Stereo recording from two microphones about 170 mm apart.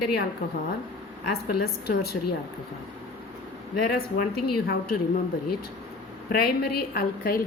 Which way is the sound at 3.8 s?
65° left (ahead or behind).